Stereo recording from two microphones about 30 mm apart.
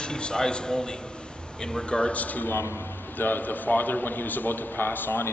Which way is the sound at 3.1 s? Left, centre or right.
Left.